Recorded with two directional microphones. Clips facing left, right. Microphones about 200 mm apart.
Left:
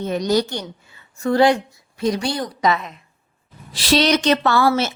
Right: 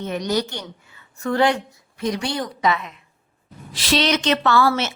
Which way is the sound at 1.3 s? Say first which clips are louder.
Left 4 dB; 15° left (ahead or behind).